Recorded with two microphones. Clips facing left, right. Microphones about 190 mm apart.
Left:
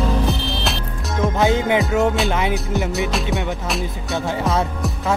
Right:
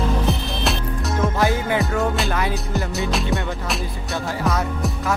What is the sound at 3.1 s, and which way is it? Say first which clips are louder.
Music: left 1 dB; centre (ahead or behind).